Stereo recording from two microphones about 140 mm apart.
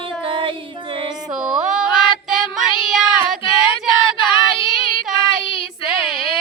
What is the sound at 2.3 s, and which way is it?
Child singing, 5° right (ahead or behind).